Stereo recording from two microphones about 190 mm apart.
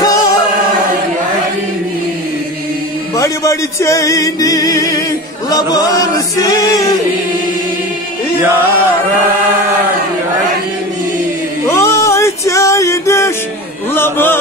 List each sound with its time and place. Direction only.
0.0 s singing: 20° left (ahead or behind)
3.2 s music: 15° left (ahead or behind)
8.4 s chant: 10° right (ahead or behind)
11.6 s music: 15° left (ahead or behind)
13.9 s chant: 10° left (ahead or behind)